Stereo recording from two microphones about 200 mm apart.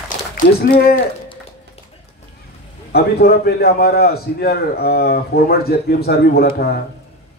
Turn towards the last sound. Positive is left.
turn(degrees=50)  # may be behind; listen again after turning